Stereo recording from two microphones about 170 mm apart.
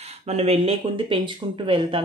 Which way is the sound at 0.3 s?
35° right (ahead or behind).